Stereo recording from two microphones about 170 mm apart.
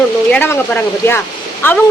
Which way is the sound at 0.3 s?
10° left (ahead or behind).